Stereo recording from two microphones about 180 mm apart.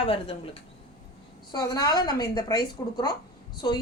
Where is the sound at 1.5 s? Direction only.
20° left (ahead or behind).